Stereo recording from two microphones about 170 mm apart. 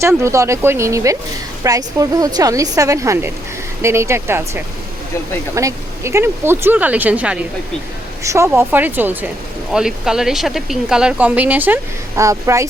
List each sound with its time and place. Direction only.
0.0 s a woman's voice: 15° right (ahead or behind)